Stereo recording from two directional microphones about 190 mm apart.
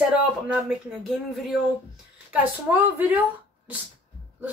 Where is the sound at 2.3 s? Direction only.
10° right (ahead or behind).